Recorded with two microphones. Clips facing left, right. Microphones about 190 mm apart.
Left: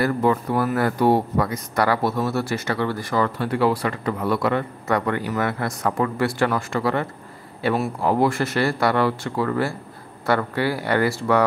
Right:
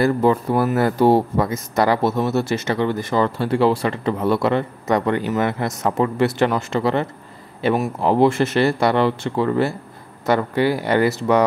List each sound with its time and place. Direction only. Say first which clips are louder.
0.0 s speech: right 3 dB; 30° right (ahead or behind)